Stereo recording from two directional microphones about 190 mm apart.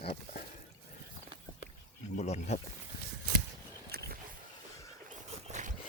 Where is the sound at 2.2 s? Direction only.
35° left (ahead or behind).